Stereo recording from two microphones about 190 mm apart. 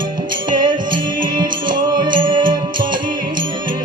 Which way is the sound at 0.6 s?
25° right (ahead or behind).